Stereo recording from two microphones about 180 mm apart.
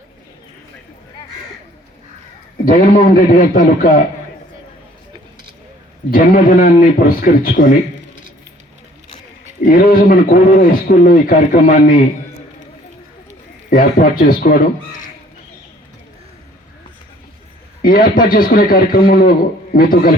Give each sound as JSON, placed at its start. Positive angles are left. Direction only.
{"t": 2.6, "sound": "a man's voice", "side_deg": 50}
{"t": 6.1, "sound": "a man's voice", "side_deg": 50}
{"t": 9.6, "sound": "a man's voice", "side_deg": 50}
{"t": 13.7, "sound": "a man's voice", "side_deg": 50}
{"t": 17.8, "sound": "a man's voice", "side_deg": 50}